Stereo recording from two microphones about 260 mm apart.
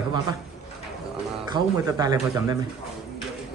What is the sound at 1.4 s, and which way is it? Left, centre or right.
Speech, centre.